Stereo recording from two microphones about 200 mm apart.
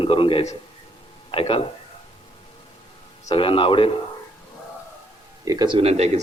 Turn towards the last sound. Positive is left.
turn(degrees=-35)  # may be behind; listen again after turning